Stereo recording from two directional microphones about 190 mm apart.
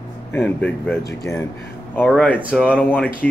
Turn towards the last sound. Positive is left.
turn(degrees=5)  # may be behind; listen again after turning